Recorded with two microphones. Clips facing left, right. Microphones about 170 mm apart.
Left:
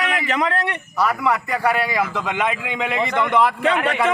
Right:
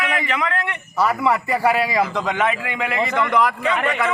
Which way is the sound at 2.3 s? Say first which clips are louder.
Right 2 dB; 15° left (ahead or behind).